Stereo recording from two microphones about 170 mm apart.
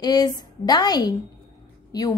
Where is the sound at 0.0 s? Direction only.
25° left (ahead or behind).